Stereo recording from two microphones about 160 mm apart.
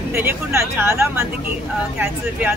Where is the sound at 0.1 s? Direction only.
15° right (ahead or behind).